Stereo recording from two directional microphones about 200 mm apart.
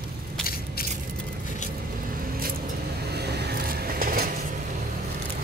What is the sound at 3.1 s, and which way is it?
Vehicle, 55° right (ahead or behind).